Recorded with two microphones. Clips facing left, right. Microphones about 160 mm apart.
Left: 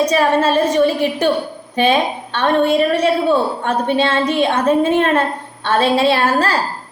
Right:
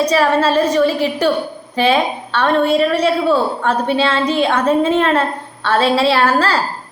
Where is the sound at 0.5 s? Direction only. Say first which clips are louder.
Even; 25° left (ahead or behind).